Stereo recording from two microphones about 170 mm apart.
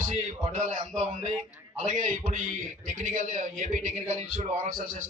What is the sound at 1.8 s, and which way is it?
A man's voice, 50° right (ahead or behind).